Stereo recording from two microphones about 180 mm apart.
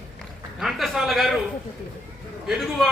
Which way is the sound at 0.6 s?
Centre (ahead or behind).